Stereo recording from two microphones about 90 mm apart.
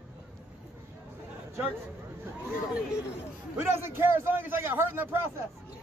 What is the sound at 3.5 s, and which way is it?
A man's voice, 25° right (ahead or behind).